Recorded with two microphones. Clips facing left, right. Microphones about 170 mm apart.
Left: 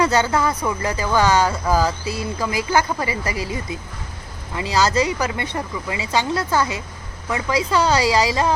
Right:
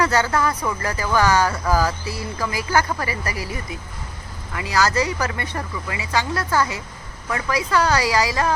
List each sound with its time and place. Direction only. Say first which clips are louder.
0.0 s speech: left 1 dB; 20° left (ahead or behind)